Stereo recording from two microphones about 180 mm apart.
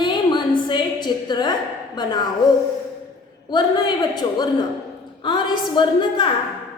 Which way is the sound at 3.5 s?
25° left (ahead or behind).